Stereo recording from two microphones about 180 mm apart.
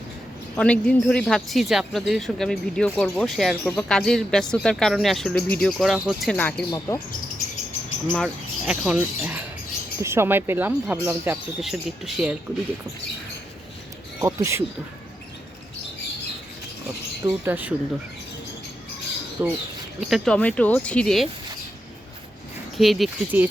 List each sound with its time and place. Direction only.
0.5 s speech: 5° left (ahead or behind)
6.7 s speech: 15° left (ahead or behind)
8.1 s speech: centre (ahead or behind)
14.2 s speech: 15° right (ahead or behind)
17.2 s speech: 10° right (ahead or behind)
19.4 s speech: 10° right (ahead or behind)
20.0 s speech: centre (ahead or behind)
22.8 s speech: centre (ahead or behind)